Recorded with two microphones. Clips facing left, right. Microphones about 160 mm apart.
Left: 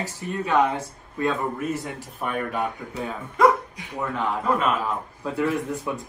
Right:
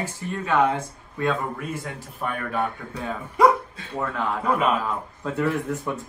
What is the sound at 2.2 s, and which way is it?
A man's voice, 15° left (ahead or behind).